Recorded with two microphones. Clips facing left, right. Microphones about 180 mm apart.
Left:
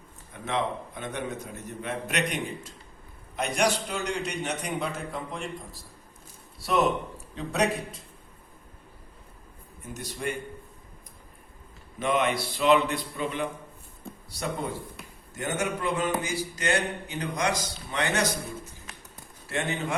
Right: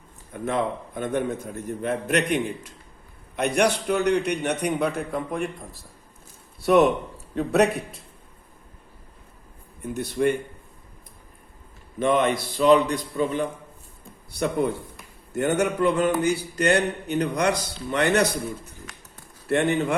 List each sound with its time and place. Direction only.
0.4 s a man's voice: 50° right (ahead or behind)
9.8 s a man's voice: 60° right (ahead or behind)
11.9 s a man's voice: 50° right (ahead or behind)
14.3 s a man's voice: 60° right (ahead or behind)